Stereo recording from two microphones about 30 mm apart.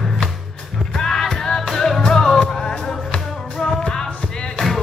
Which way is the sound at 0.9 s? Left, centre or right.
Centre.